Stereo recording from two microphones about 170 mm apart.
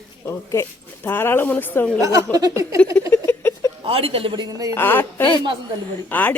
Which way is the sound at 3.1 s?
15° left (ahead or behind).